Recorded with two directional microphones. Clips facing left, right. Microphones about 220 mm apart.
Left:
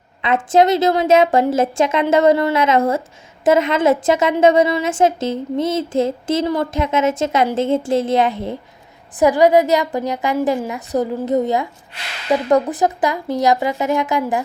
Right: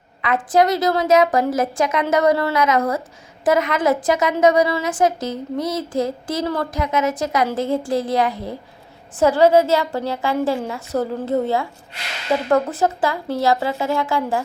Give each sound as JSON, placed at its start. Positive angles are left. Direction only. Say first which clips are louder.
{"t": 0.2, "sound": "a woman's voice", "louder": "left 3 dB", "side_deg": 25}